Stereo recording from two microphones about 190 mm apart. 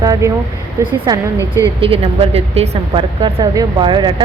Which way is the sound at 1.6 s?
30° right (ahead or behind).